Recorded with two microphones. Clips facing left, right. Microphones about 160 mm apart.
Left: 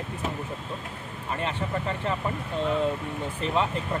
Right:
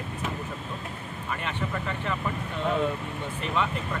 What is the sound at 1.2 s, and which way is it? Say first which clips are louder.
Speech: left 2 dB; 30° left (ahead or behind).